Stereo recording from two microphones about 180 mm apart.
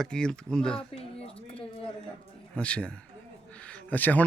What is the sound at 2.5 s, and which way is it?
Speech, 5° left (ahead or behind).